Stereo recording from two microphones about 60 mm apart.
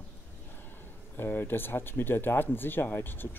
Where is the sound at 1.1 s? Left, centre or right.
Left.